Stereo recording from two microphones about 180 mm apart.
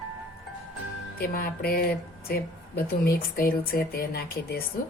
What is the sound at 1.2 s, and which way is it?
Speech, 55° left (ahead or behind).